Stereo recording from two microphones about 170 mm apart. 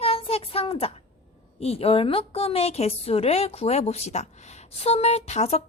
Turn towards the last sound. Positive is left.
turn(degrees=40)  # may be behind; listen again after turning